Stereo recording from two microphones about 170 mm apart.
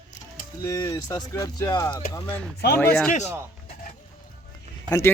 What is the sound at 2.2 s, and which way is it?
Speech, 10° left (ahead or behind).